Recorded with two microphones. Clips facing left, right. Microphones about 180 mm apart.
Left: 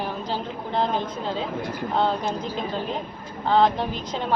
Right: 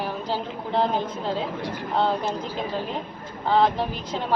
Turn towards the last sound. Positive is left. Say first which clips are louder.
# even
turn(degrees=-5)  # may be behind; listen again after turning